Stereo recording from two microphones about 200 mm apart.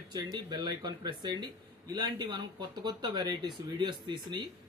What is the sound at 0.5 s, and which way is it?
Speech, 20° right (ahead or behind).